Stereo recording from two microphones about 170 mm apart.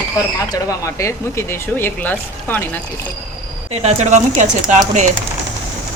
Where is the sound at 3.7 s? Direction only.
40° right (ahead or behind).